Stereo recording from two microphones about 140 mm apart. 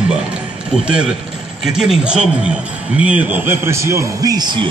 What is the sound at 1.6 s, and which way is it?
A man's voice, centre (ahead or behind).